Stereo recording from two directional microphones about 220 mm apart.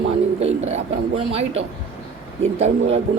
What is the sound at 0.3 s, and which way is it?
A man's voice, 30° right (ahead or behind).